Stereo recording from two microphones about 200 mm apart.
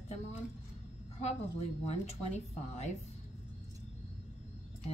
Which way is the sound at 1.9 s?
35° left (ahead or behind).